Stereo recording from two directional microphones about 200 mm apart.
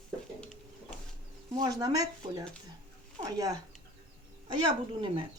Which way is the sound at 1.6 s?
20° right (ahead or behind).